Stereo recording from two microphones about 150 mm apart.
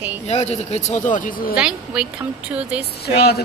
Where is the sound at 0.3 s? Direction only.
45° left (ahead or behind); by 1.6 s 70° left (ahead or behind).